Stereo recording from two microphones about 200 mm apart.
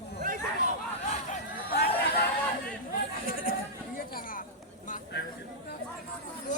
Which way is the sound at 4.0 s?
45° left (ahead or behind).